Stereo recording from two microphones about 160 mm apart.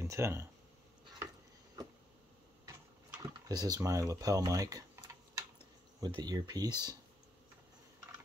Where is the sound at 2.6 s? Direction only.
15° right (ahead or behind).